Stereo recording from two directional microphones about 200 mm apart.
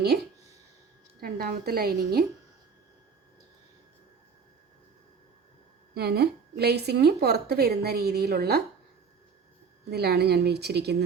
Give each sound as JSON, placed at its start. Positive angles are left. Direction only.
{"t": 1.2, "sound": "a woman's voice", "side_deg": -50}
{"t": 5.9, "sound": "a woman's voice", "side_deg": -55}
{"t": 9.9, "sound": "a woman's voice", "side_deg": -55}